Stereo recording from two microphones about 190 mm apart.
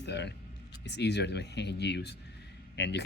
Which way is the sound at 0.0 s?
65° left (ahead or behind).